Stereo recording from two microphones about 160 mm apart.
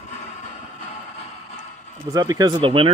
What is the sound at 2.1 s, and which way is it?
Speech, 20° right (ahead or behind).